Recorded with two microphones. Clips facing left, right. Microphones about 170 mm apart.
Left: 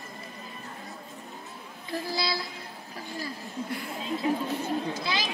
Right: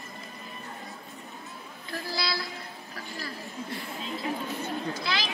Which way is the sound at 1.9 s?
15° left (ahead or behind).